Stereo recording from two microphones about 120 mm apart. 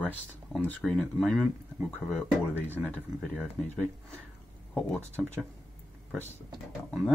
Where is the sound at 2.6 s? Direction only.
15° right (ahead or behind).